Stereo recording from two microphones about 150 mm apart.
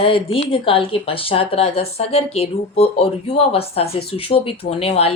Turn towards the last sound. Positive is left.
turn(degrees=40)  # may be behind; listen again after turning